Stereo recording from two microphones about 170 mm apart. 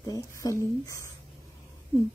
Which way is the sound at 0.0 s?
20° left (ahead or behind).